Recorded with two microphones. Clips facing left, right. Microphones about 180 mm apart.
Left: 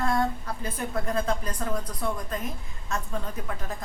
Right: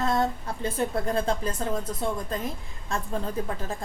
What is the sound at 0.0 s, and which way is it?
A woman's voice, 25° right (ahead or behind).